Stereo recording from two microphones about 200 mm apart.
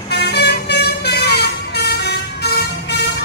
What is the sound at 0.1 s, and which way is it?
Vehicle, 55° left (ahead or behind).